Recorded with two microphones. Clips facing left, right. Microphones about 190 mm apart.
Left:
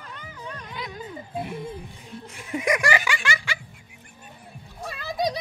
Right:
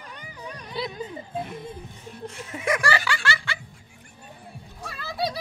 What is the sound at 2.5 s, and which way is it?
Giggle, 15° left (ahead or behind).